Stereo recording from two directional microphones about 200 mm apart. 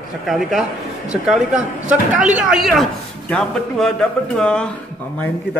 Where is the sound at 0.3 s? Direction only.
Centre (ahead or behind).